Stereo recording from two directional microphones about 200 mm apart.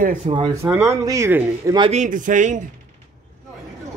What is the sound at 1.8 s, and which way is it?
Speech, 35° right (ahead or behind).